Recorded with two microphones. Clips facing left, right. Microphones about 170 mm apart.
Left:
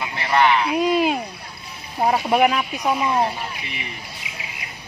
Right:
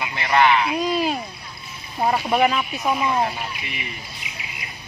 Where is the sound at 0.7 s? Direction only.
15° left (ahead or behind).